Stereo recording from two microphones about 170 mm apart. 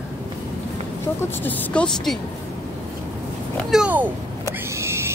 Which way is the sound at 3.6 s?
5° right (ahead or behind).